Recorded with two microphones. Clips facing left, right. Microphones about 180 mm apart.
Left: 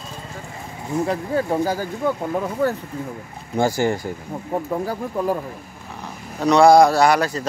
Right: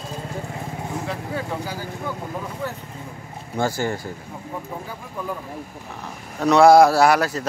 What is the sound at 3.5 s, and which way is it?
Speech, 15° left (ahead or behind).